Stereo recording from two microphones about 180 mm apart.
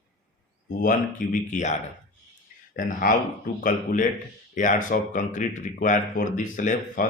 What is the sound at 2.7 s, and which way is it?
Speech, 50° left (ahead or behind).